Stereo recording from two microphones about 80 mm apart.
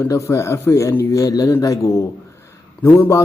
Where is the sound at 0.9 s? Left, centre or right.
Left.